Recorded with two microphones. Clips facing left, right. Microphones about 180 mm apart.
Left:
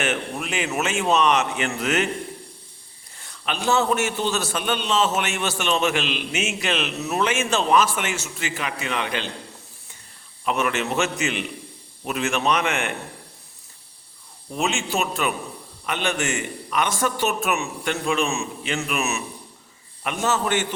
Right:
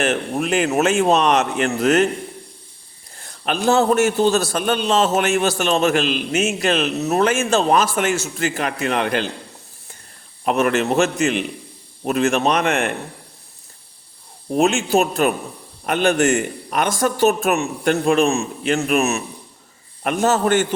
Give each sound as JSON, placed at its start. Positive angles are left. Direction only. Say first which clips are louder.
{"t": 0.0, "sound": "a man's voice", "louder": "right 6 dB", "side_deg": -40}
{"t": 3.2, "sound": "a sound", "louder": "right 6 dB", "side_deg": -45}
{"t": 3.7, "sound": "a man's voice", "louder": "right 6 dB", "side_deg": -50}
{"t": 10.4, "sound": "a man's voice", "louder": "right 6 dB", "side_deg": -50}
{"t": 14.5, "sound": "a man's voice", "louder": "right 9 dB", "side_deg": -55}